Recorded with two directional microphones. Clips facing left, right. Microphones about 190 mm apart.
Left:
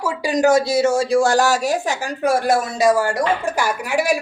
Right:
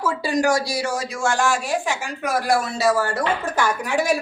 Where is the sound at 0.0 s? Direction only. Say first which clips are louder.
Left 3 dB; 15° left (ahead or behind).